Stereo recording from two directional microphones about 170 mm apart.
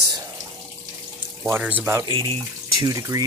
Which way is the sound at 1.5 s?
10° right (ahead or behind).